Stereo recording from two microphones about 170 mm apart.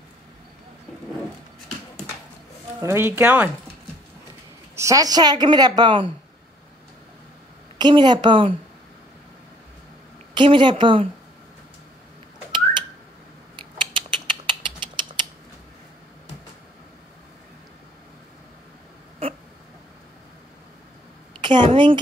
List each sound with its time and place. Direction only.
2.8 s speech: 15° right (ahead or behind)
4.7 s a woman's voice: 20° right (ahead or behind)
7.7 s a woman's voice: 25° right (ahead or behind)
10.3 s a woman's voice: 30° right (ahead or behind)
13.6 s a sound: 30° right (ahead or behind)
21.4 s a woman's voice: 30° right (ahead or behind)